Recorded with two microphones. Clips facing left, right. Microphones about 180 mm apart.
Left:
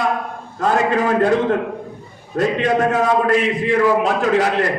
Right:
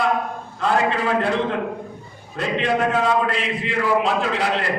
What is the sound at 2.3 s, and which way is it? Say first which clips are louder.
A man's voice: left 5 dB; 40° left (ahead or behind).